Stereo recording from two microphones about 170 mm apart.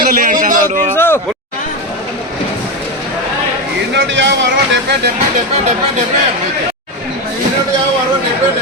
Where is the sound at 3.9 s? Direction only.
90° right.